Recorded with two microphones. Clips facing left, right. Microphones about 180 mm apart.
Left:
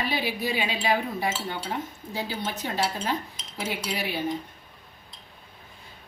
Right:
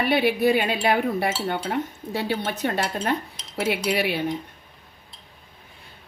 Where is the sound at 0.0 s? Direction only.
65° right (ahead or behind).